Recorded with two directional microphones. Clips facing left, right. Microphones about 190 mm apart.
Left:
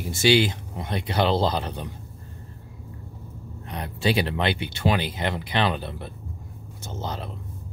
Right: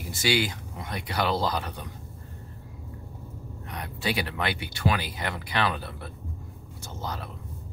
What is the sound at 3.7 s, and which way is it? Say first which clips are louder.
Speech: left 6 dB; 30° left (ahead or behind).